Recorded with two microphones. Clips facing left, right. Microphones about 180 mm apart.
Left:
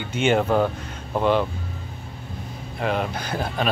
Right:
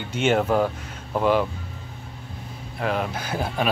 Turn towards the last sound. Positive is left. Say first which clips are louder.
# even
turn(degrees=-5)  # may be behind; listen again after turning